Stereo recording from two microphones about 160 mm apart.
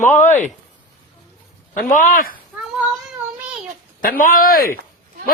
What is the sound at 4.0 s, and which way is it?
Speech, 60° left (ahead or behind).